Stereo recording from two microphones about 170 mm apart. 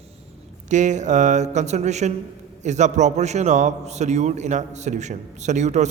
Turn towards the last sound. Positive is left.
turn(degrees=-45)  # may be behind; listen again after turning